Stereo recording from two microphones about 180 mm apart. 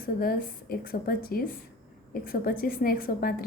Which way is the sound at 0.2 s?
55° left (ahead or behind).